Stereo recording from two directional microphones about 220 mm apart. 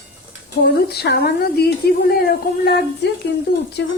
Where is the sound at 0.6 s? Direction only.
45° left (ahead or behind).